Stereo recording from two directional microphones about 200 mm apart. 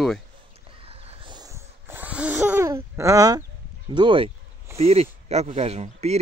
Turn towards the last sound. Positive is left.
turn(degrees=-30)  # may be behind; listen again after turning